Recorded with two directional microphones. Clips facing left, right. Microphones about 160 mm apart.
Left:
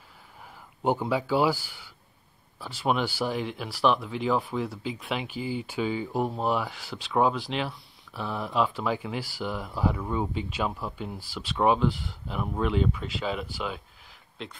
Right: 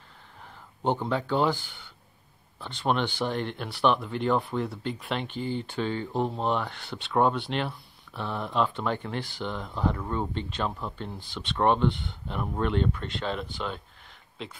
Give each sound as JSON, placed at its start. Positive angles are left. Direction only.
{"t": 0.8, "sound": "speech", "side_deg": 5}